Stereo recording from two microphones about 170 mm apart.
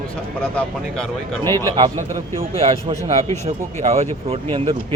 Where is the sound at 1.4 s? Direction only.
15° left (ahead or behind).